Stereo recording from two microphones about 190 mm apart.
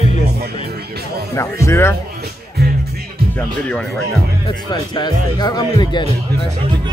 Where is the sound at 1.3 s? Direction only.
15° left (ahead or behind).